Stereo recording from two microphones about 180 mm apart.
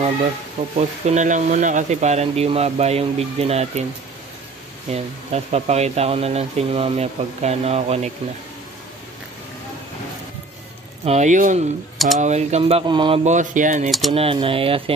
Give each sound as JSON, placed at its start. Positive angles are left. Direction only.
{"t": 0.7, "sound": "speech", "side_deg": -40}
{"t": 4.9, "sound": "speech", "side_deg": -35}
{"t": 11.1, "sound": "speech", "side_deg": -40}
{"t": 13.2, "sound": "speech", "side_deg": -45}
{"t": 13.8, "sound": "speech", "side_deg": 0}
{"t": 14.1, "sound": "speech", "side_deg": -30}